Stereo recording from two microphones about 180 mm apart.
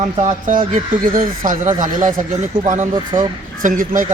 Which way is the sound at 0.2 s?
45° right (ahead or behind).